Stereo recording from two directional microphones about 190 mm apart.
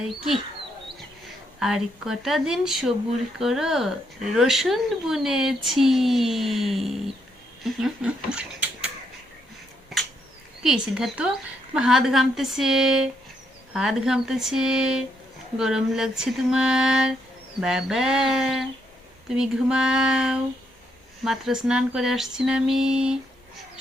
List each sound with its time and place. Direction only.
1.5 s speech: centre (ahead or behind)
10.6 s speech: 5° right (ahead or behind)